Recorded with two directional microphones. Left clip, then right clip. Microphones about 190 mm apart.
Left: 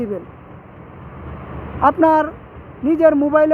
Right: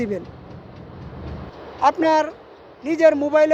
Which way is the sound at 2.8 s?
5° left (ahead or behind).